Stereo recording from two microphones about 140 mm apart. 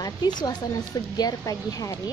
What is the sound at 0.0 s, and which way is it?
Speech, 30° left (ahead or behind).